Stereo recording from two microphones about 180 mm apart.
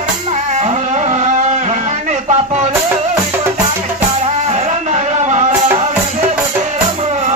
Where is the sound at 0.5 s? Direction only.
40° right (ahead or behind).